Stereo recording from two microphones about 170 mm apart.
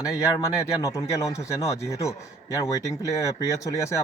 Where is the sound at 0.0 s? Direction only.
20° left (ahead or behind).